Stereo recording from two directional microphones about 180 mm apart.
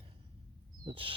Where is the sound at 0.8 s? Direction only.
25° right (ahead or behind).